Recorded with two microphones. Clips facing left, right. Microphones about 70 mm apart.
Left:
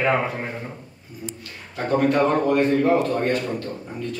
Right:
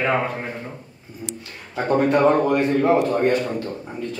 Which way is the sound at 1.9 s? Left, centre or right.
Centre.